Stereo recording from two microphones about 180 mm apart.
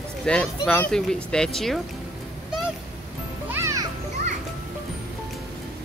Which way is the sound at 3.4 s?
15° right (ahead or behind).